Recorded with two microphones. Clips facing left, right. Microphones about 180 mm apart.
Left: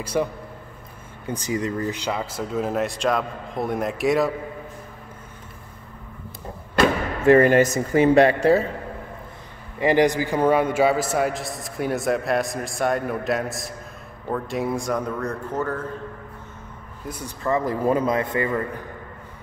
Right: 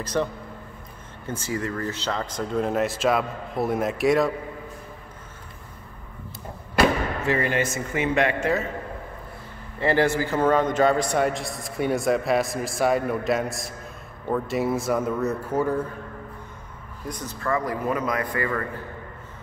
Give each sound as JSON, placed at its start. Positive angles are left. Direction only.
{"t": 0.0, "sound": "a man's voice", "side_deg": 10}
{"t": 7.2, "sound": "speech", "side_deg": 50}
{"t": 9.8, "sound": "a man's voice", "side_deg": 15}
{"t": 17.1, "sound": "speech", "side_deg": 10}
{"t": 17.5, "sound": "a man's voice", "side_deg": 25}